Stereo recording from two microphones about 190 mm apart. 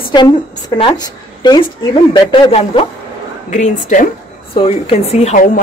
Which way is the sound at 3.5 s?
40° left (ahead or behind).